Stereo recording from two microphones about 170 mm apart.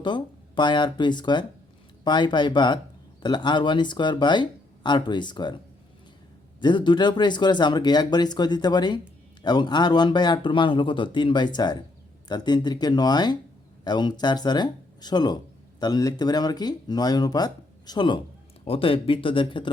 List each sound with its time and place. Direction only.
0.0 s speech: 25° left (ahead or behind)
6.6 s speech: 25° left (ahead or behind)